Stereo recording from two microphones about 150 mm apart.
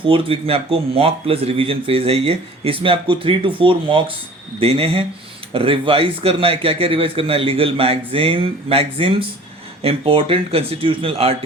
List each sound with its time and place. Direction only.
0.0 s a man's voice: 35° right (ahead or behind)